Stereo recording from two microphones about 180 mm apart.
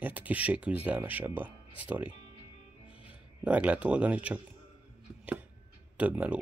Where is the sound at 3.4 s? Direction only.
5° right (ahead or behind).